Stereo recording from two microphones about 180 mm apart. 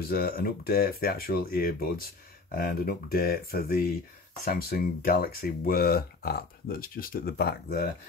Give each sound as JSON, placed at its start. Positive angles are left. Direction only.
{"t": 0.1, "sound": "speech", "side_deg": 55}